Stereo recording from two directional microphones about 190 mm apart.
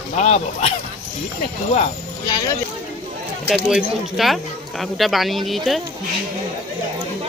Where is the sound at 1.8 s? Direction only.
20° left (ahead or behind).